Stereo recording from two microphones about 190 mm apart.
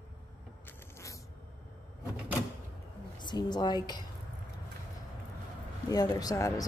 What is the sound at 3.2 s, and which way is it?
Speech, 25° left (ahead or behind).